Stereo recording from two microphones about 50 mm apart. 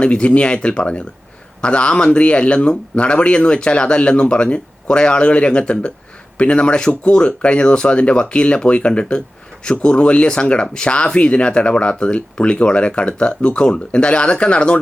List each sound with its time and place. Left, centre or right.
0.0 s speech: left